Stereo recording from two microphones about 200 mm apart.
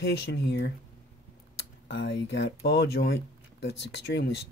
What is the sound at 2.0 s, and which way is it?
Speech, 60° left (ahead or behind).